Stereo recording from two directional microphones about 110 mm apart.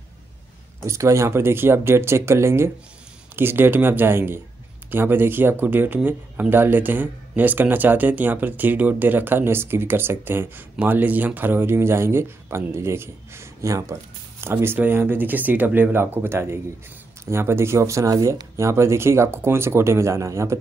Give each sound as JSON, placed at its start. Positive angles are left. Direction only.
{"t": 0.8, "sound": "speech", "side_deg": -25}